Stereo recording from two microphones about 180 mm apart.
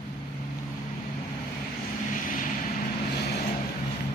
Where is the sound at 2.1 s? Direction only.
50° left (ahead or behind).